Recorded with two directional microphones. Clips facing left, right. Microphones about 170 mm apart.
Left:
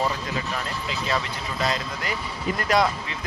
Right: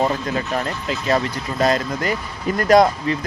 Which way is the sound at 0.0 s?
45° right (ahead or behind).